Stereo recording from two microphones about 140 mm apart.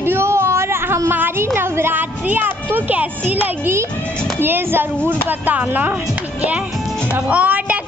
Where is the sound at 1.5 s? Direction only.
15° right (ahead or behind).